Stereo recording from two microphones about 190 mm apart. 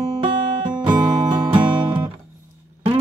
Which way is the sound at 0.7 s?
20° right (ahead or behind).